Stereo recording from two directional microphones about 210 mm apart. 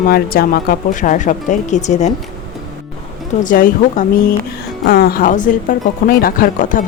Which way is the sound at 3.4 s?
40° left (ahead or behind).